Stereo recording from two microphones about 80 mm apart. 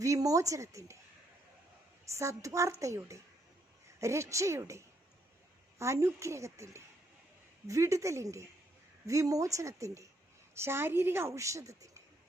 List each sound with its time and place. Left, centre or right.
0.0 s a woman's voice: right
2.1 s a woman's voice: right
5.8 s a woman's voice: right